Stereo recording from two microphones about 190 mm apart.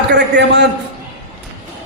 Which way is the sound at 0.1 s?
65° right (ahead or behind).